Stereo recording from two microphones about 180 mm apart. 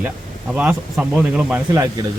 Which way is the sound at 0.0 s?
5° right (ahead or behind).